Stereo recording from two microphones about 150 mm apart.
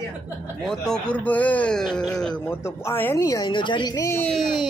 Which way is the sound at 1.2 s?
10° left (ahead or behind).